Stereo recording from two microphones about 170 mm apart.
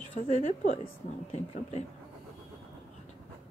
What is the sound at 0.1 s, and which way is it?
A woman's voice, 45° left (ahead or behind).